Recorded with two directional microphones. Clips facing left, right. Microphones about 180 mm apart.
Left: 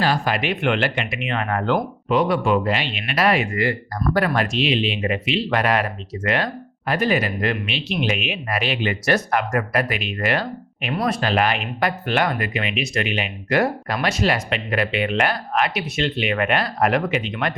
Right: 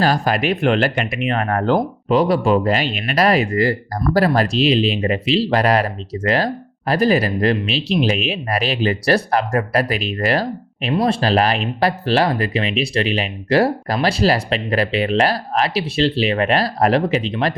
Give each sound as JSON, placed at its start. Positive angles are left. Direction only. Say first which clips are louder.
{"t": 0.0, "sound": "speech", "louder": "right 4 dB", "side_deg": -40}